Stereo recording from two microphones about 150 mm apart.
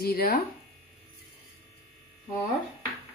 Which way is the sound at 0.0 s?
85° left.